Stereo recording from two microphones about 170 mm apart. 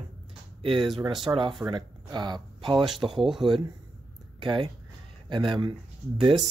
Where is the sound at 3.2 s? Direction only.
Centre (ahead or behind).